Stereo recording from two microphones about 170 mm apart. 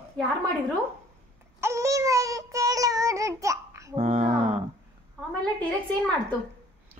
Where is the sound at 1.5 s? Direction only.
15° right (ahead or behind).